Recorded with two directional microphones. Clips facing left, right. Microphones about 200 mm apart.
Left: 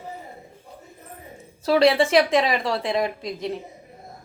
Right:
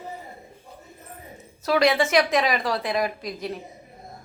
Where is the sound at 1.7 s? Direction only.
30° left (ahead or behind).